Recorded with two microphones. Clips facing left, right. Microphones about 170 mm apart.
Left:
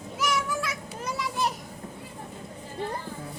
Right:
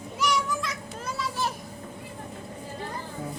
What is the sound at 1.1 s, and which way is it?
Children playing, 15° left (ahead or behind).